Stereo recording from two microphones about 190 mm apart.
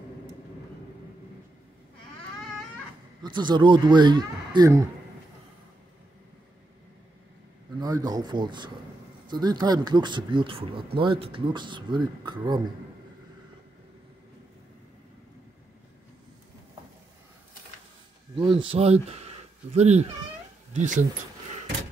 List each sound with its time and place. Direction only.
3.2 s speech: 25° right (ahead or behind)
7.8 s speech: 20° right (ahead or behind)
18.3 s speech: 25° right (ahead or behind)